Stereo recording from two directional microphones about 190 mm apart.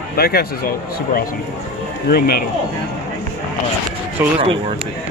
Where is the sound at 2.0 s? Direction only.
55° left (ahead or behind).